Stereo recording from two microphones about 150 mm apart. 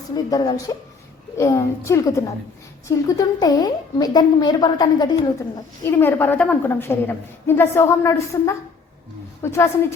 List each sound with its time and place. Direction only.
0.1 s a woman's voice: 25° left (ahead or behind)